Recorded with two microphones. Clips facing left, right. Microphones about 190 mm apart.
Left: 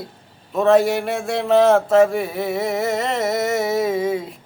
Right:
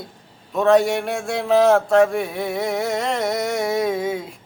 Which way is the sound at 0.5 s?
Centre (ahead or behind).